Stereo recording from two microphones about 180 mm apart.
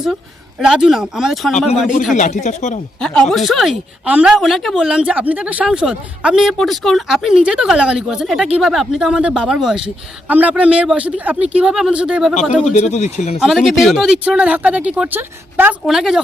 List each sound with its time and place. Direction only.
0.6 s speech: 5° right (ahead or behind)
2.1 s speech: 40° left (ahead or behind)
3.0 s speech: 5° left (ahead or behind)
12.3 s speech: 40° left (ahead or behind)
13.4 s speech: centre (ahead or behind)